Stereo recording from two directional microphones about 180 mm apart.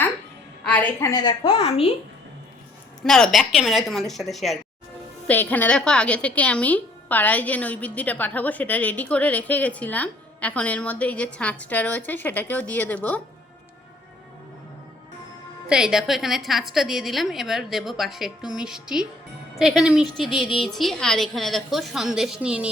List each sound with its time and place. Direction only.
0.6 s a woman's voice: 10° left (ahead or behind)
1.1 s a child's voice: 25° left (ahead or behind)
3.0 s a woman's voice: centre (ahead or behind)
15.6 s a woman's voice: 5° right (ahead or behind)